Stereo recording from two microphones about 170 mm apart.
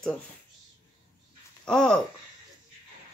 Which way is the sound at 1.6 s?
5° left (ahead or behind).